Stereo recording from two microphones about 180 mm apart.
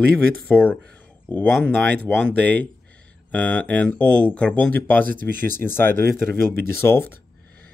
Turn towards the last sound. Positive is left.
turn(degrees=15)  # may be behind; listen again after turning